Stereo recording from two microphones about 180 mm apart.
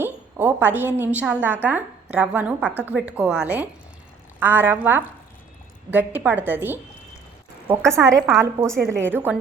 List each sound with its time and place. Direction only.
0.0 s a woman's voice: 10° right (ahead or behind)
7.9 s a woman's voice: 15° right (ahead or behind)